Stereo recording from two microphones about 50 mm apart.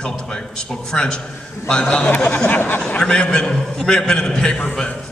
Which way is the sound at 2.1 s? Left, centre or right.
Left.